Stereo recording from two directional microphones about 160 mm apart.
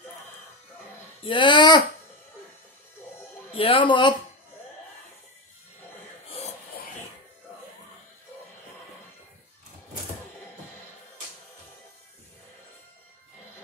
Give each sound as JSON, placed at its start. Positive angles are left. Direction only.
{"t": 1.2, "sound": "a child's voice", "side_deg": 30}
{"t": 3.5, "sound": "speech", "side_deg": 30}
{"t": 6.2, "sound": "a sound", "side_deg": 40}